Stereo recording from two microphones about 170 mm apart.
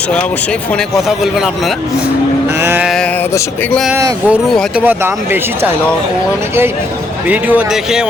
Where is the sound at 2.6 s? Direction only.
10° right (ahead or behind).